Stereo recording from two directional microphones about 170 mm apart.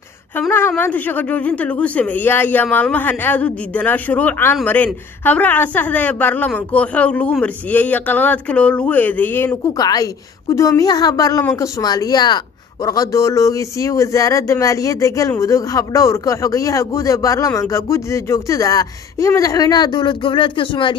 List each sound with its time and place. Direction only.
0.4 s a man's voice: 10° left (ahead or behind); by 20.9 s 30° left (ahead or behind)